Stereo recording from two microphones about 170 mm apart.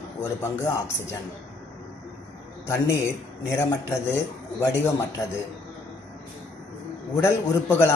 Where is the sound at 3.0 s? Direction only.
15° left (ahead or behind).